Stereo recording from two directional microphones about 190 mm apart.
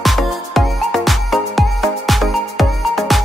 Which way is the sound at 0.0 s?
Centre (ahead or behind).